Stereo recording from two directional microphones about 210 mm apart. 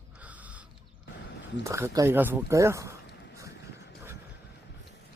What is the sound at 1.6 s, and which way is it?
Speech, 15° right (ahead or behind).